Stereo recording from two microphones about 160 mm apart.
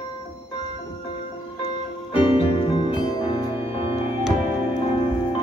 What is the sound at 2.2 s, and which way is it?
Music, 35° left (ahead or behind).